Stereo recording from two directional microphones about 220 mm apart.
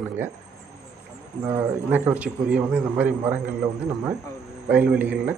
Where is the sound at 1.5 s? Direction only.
5° right (ahead or behind).